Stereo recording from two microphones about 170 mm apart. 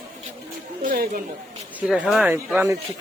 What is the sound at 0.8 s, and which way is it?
Chatter, 55° right (ahead or behind).